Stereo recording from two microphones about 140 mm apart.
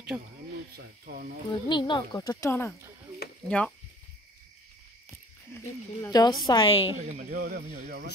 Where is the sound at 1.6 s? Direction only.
35° left (ahead or behind); by 3.7 s 10° left (ahead or behind).